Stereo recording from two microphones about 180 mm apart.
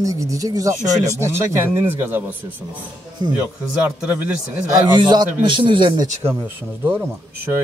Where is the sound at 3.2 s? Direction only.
25° right (ahead or behind).